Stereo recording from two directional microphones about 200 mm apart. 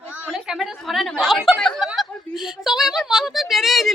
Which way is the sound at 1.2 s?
Centre (ahead or behind).